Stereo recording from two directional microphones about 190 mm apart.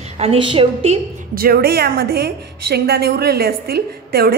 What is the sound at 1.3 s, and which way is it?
A woman's voice, 55° right (ahead or behind).